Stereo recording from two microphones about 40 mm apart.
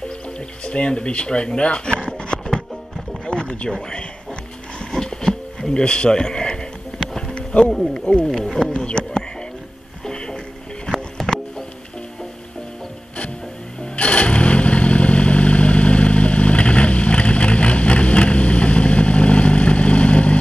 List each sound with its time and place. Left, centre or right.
0.7 s speech: left
3.3 s a sound: left
8.3 s speech: centre
8.7 s speech: left
10.0 s music: centre
11.2 s music: centre
13.7 s motorcycle: left